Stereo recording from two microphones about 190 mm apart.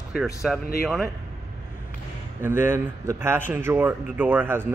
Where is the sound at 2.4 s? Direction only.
10° right (ahead or behind).